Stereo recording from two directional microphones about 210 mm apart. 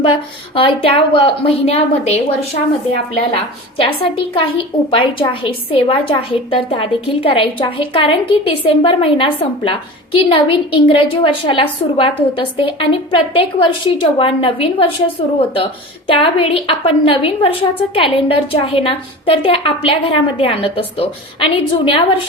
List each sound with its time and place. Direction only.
0.5 s a woman's voice: 25° left (ahead or behind)